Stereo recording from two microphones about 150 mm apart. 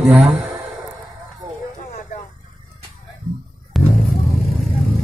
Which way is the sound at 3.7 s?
Centre (ahead or behind).